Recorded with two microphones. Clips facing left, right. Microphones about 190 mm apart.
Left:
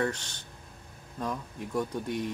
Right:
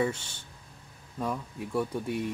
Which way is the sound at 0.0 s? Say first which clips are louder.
Right 1 dB; 10° right (ahead or behind).